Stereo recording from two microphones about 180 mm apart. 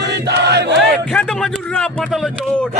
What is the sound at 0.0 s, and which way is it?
Chant, 70° right (ahead or behind).